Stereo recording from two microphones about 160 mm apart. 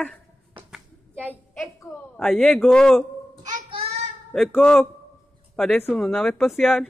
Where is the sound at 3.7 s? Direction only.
35° right (ahead or behind).